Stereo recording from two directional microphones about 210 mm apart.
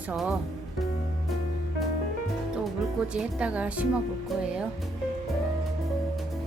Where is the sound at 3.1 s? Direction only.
5° right (ahead or behind).